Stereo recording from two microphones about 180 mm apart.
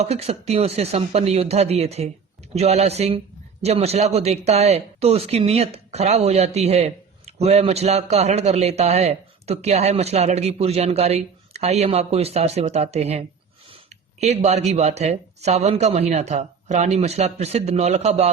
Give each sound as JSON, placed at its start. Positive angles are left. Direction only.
{"t": 0.0, "sound": "speech", "side_deg": -35}